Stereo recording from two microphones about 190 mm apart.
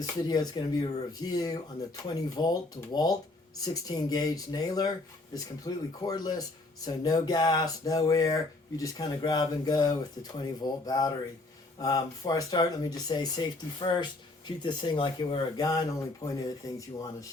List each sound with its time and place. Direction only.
0.0 s speech: 20° left (ahead or behind)